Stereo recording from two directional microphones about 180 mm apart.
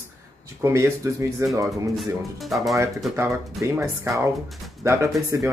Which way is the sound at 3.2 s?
15° right (ahead or behind).